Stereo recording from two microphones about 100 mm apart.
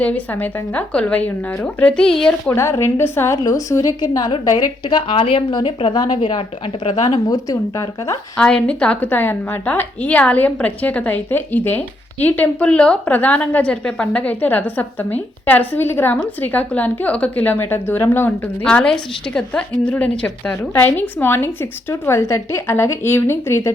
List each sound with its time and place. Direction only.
0.0 s a woman's voice: 15° left (ahead or behind)
2.6 s a woman's voice: 30° left (ahead or behind)
4.4 s a woman's voice: 45° left (ahead or behind)
5.1 s speech: 70° left (ahead or behind)
5.5 s a woman's voice: 50° left (ahead or behind)
8.4 s a woman's voice: 10° left (ahead or behind)
18.6 s a woman's voice: 10° left (ahead or behind); by 23.7 s 30° left (ahead or behind)